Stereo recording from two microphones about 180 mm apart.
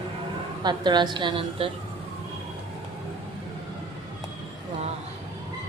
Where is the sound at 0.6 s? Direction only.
25° right (ahead or behind).